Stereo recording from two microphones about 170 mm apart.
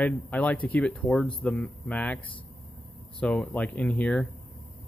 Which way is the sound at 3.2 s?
5° left (ahead or behind).